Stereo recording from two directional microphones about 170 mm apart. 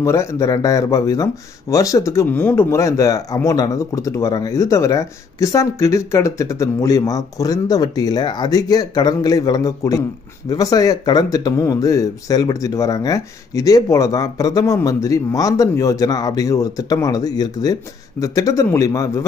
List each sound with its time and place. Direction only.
0.0 s speech: 15° left (ahead or behind)